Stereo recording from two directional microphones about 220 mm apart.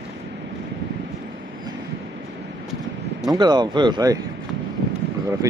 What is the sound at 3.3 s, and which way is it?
Speech, 20° right (ahead or behind).